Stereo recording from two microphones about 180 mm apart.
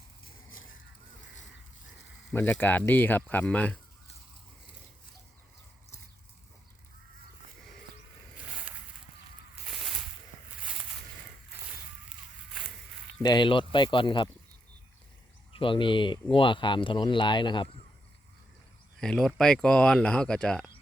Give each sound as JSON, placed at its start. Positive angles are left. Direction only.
{"t": 2.3, "sound": "speech", "side_deg": 10}
{"t": 13.2, "sound": "speech", "side_deg": 25}
{"t": 15.5, "sound": "speech", "side_deg": 30}
{"t": 18.9, "sound": "speech", "side_deg": 5}